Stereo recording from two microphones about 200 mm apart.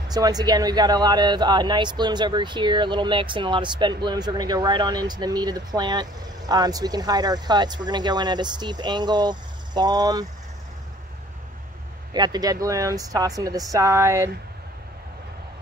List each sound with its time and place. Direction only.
0.1 s speech: 20° right (ahead or behind)
12.1 s speech: 20° right (ahead or behind)